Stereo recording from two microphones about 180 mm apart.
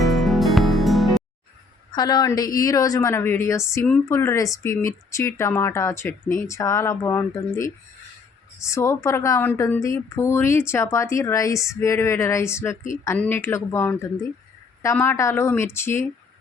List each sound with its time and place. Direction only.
0.0 s music: centre (ahead or behind)
1.9 s a woman's voice: 20° left (ahead or behind)